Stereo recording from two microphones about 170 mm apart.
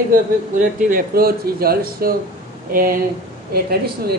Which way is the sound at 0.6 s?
50° right (ahead or behind).